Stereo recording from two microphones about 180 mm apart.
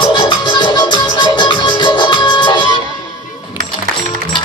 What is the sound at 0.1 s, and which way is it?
Music, 25° left (ahead or behind).